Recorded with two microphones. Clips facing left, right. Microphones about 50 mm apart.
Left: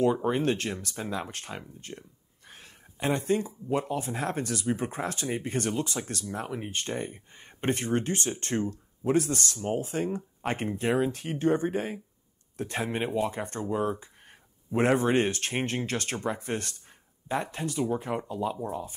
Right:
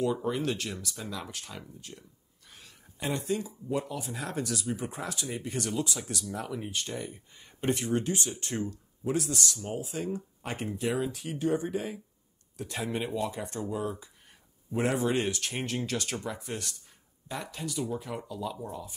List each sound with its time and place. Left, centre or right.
0.0 s speech: left
8.5 s speech: left